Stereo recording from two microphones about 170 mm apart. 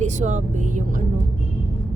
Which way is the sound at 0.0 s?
45° right (ahead or behind).